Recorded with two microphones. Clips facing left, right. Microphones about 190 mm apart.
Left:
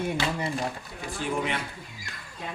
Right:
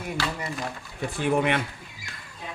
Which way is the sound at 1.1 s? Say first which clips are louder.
Right 6 dB; 60° right (ahead or behind).